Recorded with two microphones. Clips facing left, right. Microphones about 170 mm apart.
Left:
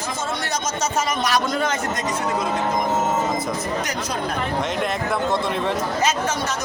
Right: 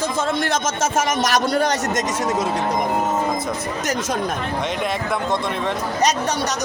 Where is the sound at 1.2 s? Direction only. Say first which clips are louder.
Right 3 dB; 40° right (ahead or behind).